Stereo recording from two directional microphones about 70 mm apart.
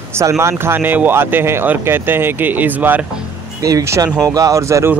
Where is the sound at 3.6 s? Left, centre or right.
Right.